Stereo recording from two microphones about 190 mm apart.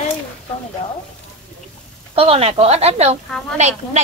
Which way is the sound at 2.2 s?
30° right (ahead or behind).